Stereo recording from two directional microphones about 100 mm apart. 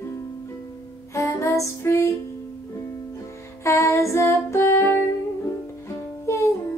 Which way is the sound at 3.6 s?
30° left (ahead or behind).